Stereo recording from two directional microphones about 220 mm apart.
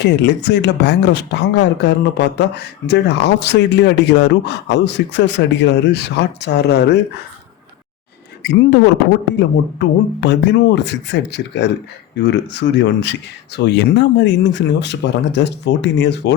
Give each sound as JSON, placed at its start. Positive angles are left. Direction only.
{"t": 0.0, "sound": "speech", "side_deg": 50}
{"t": 8.4, "sound": "speech", "side_deg": 45}
{"t": 9.7, "sound": "speech", "side_deg": 50}